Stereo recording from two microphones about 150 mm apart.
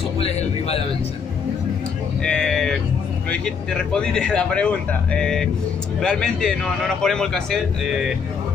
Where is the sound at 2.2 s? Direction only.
5° left (ahead or behind).